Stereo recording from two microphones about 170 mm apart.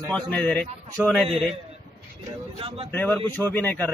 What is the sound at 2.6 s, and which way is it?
Speech, 30° right (ahead or behind).